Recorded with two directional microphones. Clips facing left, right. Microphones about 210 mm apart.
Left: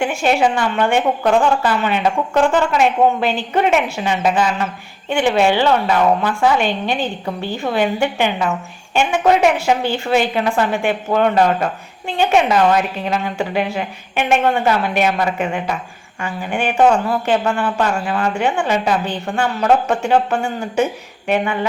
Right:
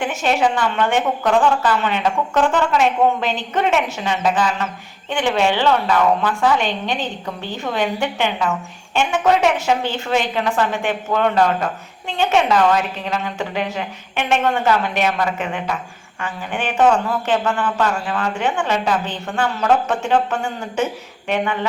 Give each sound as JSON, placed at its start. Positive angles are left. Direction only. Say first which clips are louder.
{"t": 0.0, "sound": "a woman's voice", "louder": "left 2 dB", "side_deg": 10}